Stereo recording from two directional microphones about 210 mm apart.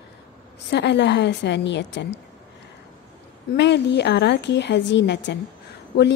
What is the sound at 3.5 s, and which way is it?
A woman's voice, 55° left (ahead or behind).